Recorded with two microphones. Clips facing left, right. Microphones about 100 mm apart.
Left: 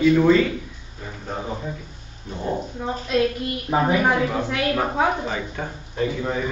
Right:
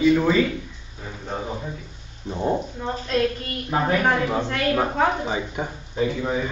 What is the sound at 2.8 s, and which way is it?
A woman's voice, 5° left (ahead or behind).